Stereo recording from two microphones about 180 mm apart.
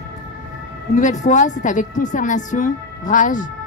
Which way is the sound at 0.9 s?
40° left (ahead or behind).